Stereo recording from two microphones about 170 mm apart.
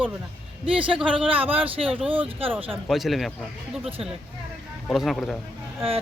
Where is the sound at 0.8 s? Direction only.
30° right (ahead or behind).